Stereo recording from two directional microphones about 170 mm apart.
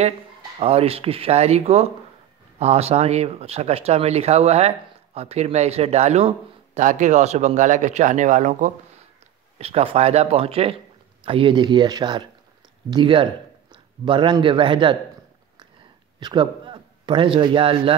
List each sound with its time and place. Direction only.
0.6 s speech: 35° right (ahead or behind)
9.6 s speech: 35° right (ahead or behind)
16.2 s a man's voice: 25° right (ahead or behind)